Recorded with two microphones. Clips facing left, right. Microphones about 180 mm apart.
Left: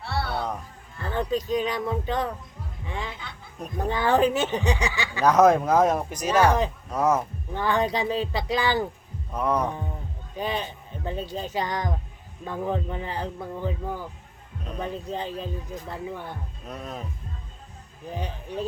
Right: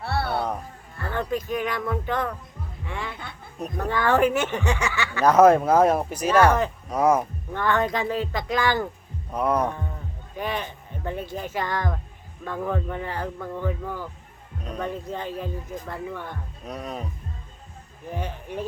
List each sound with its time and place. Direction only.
0.0 s music: 55° right (ahead or behind)
1.1 s speech: 15° left (ahead or behind)
1.8 s music: 20° left (ahead or behind)
2.8 s a sound: 15° left (ahead or behind)
3.8 s speech: 15° left (ahead or behind)
5.2 s speech: 10° right (ahead or behind)
6.3 s speech: 10° left (ahead or behind)
6.9 s speech: 10° right (ahead or behind)
7.5 s speech: 15° left (ahead or behind)
9.3 s speech: 10° right (ahead or behind)
9.6 s a man's voice: 15° left (ahead or behind)
15.3 s speech: 15° right (ahead or behind)
15.9 s speech: 15° left (ahead or behind)
16.6 s speech: 10° right (ahead or behind)